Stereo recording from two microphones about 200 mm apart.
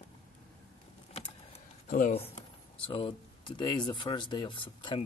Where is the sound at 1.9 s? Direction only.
40° left (ahead or behind).